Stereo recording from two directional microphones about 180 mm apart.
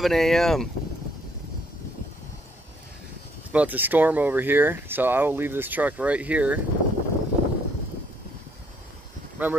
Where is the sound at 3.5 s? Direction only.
10° right (ahead or behind).